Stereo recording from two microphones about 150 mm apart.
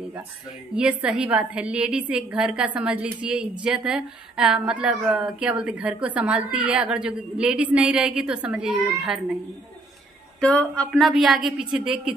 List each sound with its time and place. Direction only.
0.7 s a woman's voice: 5° right (ahead or behind)
10.4 s a woman's voice: 5° left (ahead or behind)